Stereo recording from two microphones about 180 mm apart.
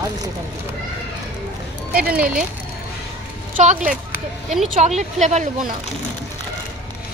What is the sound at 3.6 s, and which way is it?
A woman's voice, 45° right (ahead or behind).